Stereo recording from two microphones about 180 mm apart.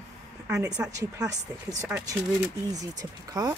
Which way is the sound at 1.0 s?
20° right (ahead or behind).